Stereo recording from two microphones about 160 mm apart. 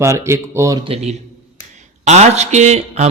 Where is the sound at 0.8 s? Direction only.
40° right (ahead or behind).